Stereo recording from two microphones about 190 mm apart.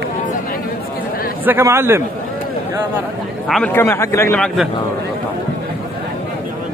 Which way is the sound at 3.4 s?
5° left (ahead or behind).